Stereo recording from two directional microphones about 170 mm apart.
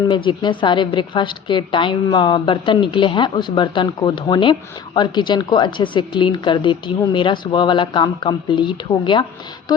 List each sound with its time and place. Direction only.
0.1 s a woman's voice: 25° left (ahead or behind)